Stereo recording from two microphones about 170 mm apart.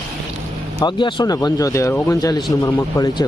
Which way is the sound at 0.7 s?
25° left (ahead or behind).